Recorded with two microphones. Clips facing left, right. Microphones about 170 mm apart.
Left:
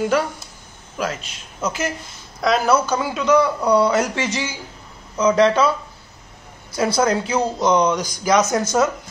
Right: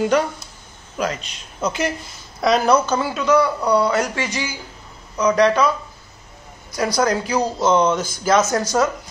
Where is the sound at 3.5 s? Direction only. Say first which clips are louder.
Left 1 dB; centre (ahead or behind).